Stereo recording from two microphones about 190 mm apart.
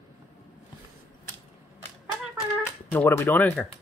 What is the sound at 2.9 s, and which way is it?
Speech, 10° left (ahead or behind).